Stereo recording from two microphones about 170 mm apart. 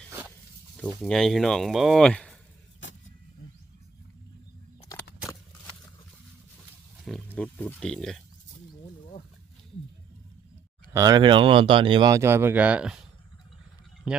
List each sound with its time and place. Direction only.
0.8 s speech: 5° left (ahead or behind)
7.0 s speech: 5° left (ahead or behind)
10.9 s speech: 20° right (ahead or behind); by 13.1 s 5° right (ahead or behind)
14.1 s speech: 5° right (ahead or behind)